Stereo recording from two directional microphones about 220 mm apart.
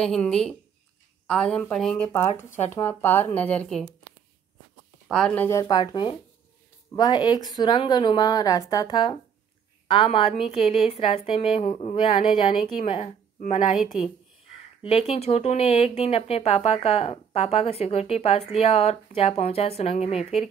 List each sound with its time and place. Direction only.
0.0 s a woman's voice: 5° left (ahead or behind)
5.0 s a woman's voice: 5° left (ahead or behind); by 13.7 s 30° left (ahead or behind)
13.7 s a woman's voice: centre (ahead or behind)
14.8 s speech: 30° left (ahead or behind)